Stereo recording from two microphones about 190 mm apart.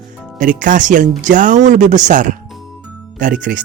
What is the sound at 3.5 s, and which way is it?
Speech, 50° right (ahead or behind).